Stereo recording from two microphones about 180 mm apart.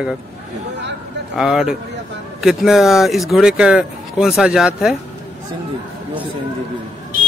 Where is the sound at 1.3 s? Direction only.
5° right (ahead or behind).